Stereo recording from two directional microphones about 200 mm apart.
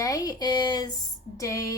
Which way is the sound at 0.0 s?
20° left (ahead or behind).